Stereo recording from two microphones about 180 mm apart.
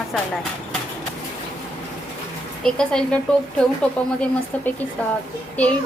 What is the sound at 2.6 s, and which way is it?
Speech, 5° left (ahead or behind).